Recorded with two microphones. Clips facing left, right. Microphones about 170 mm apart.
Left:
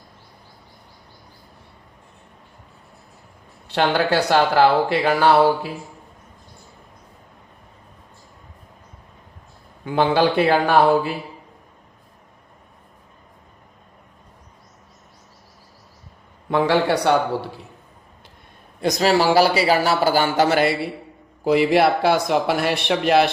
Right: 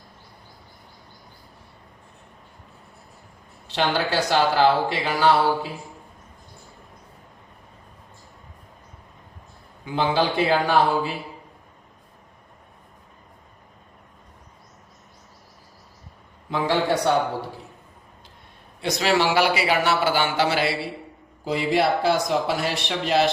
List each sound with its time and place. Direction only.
3.7 s speech: 60° left (ahead or behind)
9.8 s speech: 55° left (ahead or behind)
16.5 s a man's voice: 65° left (ahead or behind)
18.8 s a man's voice: 40° left (ahead or behind)
21.4 s speech: 65° left (ahead or behind)